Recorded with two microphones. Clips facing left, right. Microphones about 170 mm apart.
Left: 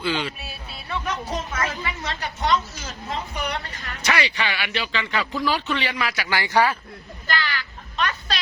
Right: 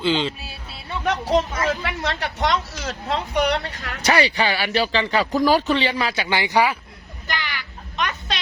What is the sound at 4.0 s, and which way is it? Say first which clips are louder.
Speech: right 5 dB; 35° right (ahead or behind).